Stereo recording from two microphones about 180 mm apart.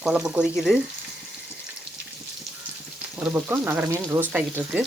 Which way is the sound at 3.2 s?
15° right (ahead or behind).